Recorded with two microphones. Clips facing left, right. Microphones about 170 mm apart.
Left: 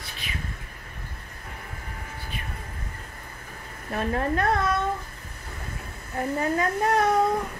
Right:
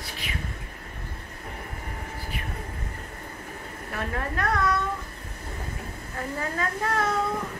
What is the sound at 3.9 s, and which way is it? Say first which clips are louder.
Speech: left 6 dB; 25° left (ahead or behind).